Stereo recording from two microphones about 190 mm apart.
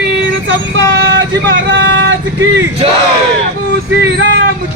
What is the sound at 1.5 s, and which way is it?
Vehicle, 70° right (ahead or behind).